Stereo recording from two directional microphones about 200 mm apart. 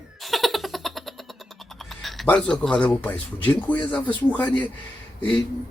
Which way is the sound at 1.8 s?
Centre (ahead or behind).